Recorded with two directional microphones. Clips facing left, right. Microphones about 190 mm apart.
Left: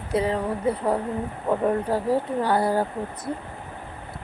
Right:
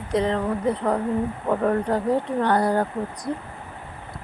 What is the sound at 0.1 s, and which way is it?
Speech, 5° left (ahead or behind).